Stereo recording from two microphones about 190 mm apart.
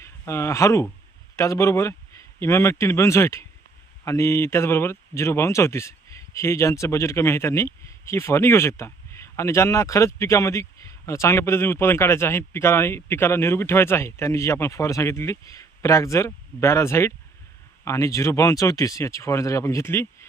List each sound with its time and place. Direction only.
0.0 s speech: 15° left (ahead or behind)